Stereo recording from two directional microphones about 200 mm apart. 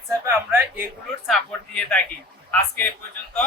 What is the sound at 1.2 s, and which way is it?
Speech, centre (ahead or behind).